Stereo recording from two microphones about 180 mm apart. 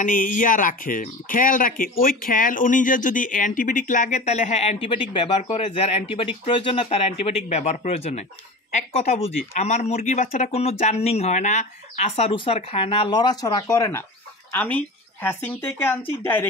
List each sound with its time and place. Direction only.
0.0 s speech: 45° left (ahead or behind); by 16.4 s 10° left (ahead or behind)